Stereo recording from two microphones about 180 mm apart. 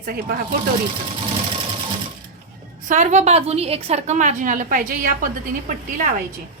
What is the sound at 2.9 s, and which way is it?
A woman's voice, 40° right (ahead or behind).